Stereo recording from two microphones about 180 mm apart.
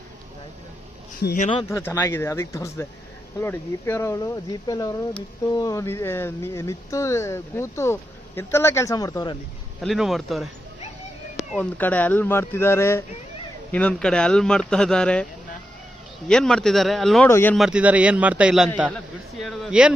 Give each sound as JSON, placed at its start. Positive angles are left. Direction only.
{"t": 1.2, "sound": "speech", "side_deg": 60}
{"t": 1.6, "sound": "speech", "side_deg": 15}
{"t": 9.8, "sound": "speech", "side_deg": 0}
{"t": 11.5, "sound": "speech", "side_deg": 10}
{"t": 16.3, "sound": "speech", "side_deg": 5}
{"t": 17.2, "sound": "speech", "side_deg": 10}
{"t": 17.6, "sound": "speech", "side_deg": -5}